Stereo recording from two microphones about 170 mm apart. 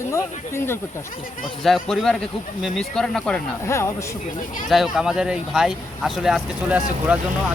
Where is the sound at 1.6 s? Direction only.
Centre (ahead or behind).